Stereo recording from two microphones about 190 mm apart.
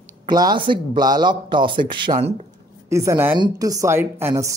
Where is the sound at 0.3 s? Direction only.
20° right (ahead or behind).